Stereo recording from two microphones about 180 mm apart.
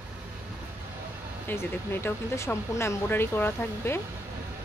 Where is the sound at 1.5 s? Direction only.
15° left (ahead or behind).